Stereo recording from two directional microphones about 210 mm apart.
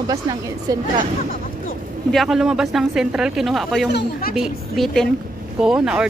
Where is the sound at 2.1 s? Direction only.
Centre (ahead or behind).